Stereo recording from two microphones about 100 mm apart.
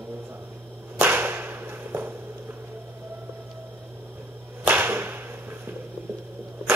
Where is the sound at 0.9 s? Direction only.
20° right (ahead or behind).